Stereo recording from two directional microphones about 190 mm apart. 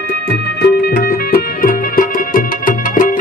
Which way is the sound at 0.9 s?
50° left (ahead or behind).